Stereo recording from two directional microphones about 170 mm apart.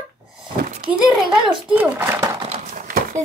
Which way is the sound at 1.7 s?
15° right (ahead or behind).